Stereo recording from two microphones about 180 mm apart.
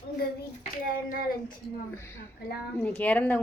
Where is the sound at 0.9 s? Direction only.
50° left (ahead or behind).